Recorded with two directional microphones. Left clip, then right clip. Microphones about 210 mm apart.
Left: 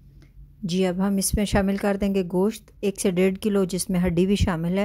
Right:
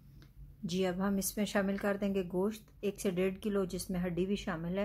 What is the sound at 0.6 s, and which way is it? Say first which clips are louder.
A woman's voice: left 10 dB; 40° left (ahead or behind).